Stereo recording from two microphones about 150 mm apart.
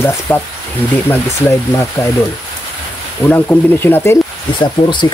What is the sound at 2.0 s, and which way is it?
Speech, 20° left (ahead or behind).